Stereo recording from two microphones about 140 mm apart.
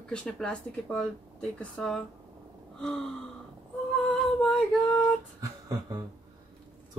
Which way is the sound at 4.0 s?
5° left (ahead or behind).